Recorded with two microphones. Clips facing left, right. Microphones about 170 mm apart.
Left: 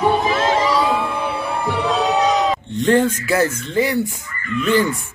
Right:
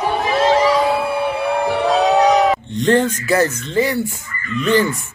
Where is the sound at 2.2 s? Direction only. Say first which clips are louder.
Right 4 dB; 20° right (ahead or behind).